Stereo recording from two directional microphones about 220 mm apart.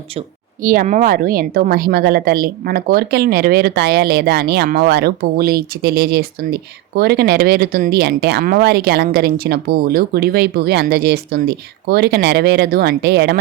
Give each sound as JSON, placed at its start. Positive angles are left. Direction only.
{"t": 0.2, "sound": "speech", "side_deg": -40}